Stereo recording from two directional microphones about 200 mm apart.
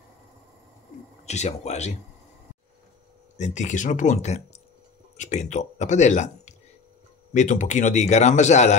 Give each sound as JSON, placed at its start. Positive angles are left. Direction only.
{"t": 1.2, "sound": "speech", "side_deg": 35}
{"t": 3.3, "sound": "speech", "side_deg": 35}